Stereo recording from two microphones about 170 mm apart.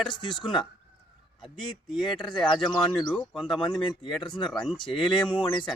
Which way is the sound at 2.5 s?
30° left (ahead or behind).